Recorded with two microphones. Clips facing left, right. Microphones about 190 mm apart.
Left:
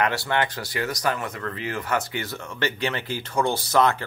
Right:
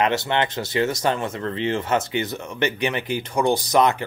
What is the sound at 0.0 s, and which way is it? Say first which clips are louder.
Speech: right 3 dB; 20° right (ahead or behind).